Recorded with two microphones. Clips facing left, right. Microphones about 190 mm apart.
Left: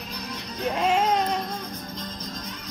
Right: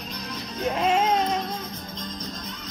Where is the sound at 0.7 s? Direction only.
Centre (ahead or behind).